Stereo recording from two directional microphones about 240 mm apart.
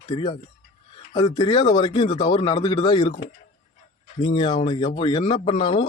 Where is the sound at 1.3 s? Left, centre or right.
Centre.